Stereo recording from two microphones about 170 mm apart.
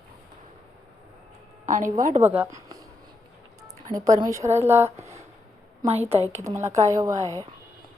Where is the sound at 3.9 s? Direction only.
20° right (ahead or behind).